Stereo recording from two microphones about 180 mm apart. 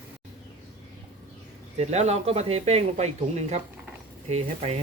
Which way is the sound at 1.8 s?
40° right (ahead or behind).